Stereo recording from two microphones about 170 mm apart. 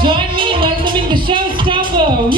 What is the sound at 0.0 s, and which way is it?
Music, 30° right (ahead or behind).